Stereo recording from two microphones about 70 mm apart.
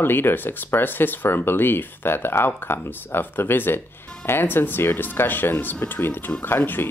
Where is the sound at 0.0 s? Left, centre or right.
Left.